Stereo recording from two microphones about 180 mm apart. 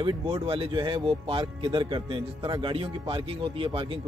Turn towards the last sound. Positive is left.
turn(degrees=-30)  # may be behind; listen again after turning